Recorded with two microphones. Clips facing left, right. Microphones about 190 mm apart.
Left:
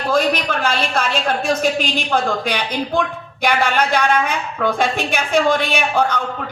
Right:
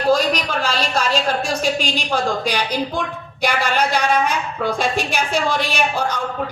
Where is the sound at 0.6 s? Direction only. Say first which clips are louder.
Left 1 dB; 55° left (ahead or behind).